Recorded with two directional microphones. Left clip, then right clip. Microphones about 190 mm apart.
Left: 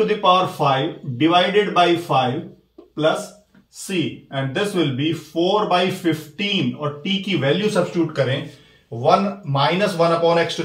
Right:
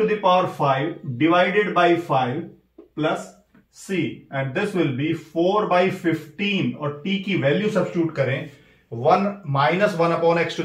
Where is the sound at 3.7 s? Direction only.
5° right (ahead or behind).